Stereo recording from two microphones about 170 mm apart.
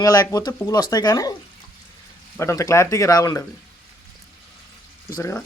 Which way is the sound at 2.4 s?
15° left (ahead or behind).